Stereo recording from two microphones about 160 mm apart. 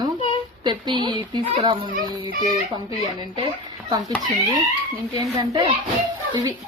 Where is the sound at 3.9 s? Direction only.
25° right (ahead or behind).